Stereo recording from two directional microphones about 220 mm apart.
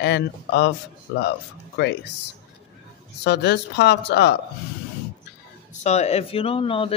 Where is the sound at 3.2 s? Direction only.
50° left (ahead or behind).